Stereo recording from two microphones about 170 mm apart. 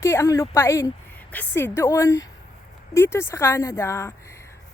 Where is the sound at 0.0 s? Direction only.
15° left (ahead or behind).